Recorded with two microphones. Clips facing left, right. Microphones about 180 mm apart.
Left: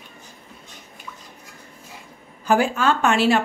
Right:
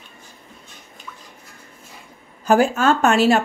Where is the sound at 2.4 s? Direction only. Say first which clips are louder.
Right 3 dB; 45° right (ahead or behind).